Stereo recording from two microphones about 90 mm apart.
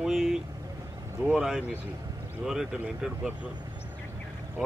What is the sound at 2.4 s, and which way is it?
Speech, 5° right (ahead or behind).